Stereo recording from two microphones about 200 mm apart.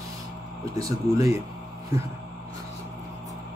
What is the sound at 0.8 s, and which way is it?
Speech, 15° right (ahead or behind).